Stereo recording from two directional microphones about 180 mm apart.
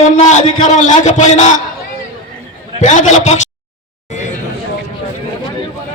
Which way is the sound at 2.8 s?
40° left (ahead or behind).